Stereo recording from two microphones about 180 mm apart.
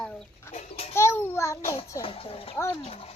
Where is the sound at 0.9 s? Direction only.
15° left (ahead or behind).